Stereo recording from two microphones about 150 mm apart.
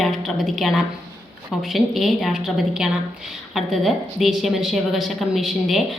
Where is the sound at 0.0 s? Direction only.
Centre (ahead or behind).